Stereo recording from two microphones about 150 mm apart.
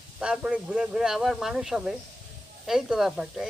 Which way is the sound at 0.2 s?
5° right (ahead or behind).